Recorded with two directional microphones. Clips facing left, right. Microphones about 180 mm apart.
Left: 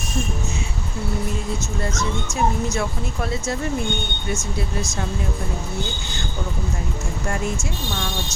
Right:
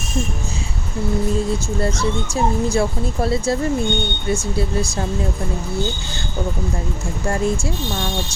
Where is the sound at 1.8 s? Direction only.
30° right (ahead or behind).